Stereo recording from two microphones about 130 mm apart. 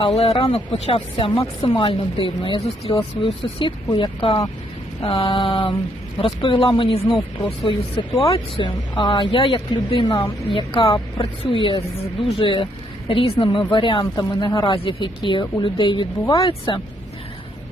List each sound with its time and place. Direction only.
0.0 s speech: 50° left (ahead or behind)